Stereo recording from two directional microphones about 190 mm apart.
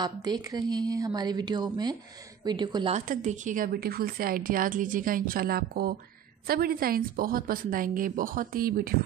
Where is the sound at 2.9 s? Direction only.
40° right (ahead or behind).